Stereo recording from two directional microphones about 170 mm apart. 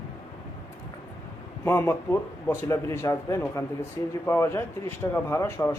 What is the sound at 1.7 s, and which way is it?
Speech, 15° left (ahead or behind).